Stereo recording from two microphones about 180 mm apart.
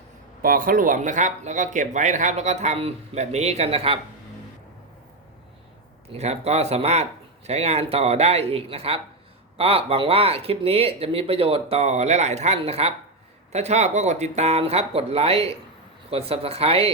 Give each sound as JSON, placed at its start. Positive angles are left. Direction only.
{"t": 0.4, "sound": "speech", "side_deg": -50}
{"t": 6.1, "sound": "speech", "side_deg": -35}